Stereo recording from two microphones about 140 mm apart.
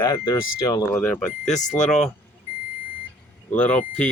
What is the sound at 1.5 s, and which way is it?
Speech, 60° left (ahead or behind).